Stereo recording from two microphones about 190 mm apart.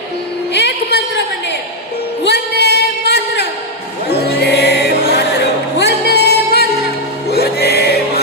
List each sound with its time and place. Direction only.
0.5 s a sound: 65° left (ahead or behind)
2.2 s singing: 60° left (ahead or behind)
4.2 s music: 60° left (ahead or behind)